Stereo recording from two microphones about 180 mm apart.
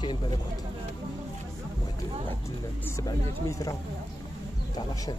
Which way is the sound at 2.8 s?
20° left (ahead or behind).